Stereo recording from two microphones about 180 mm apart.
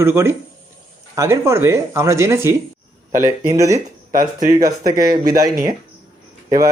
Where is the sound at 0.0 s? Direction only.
15° right (ahead or behind).